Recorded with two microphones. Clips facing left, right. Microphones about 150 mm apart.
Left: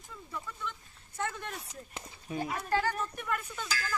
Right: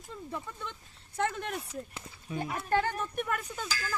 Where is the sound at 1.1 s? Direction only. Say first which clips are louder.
Right 5 dB; 60° right (ahead or behind).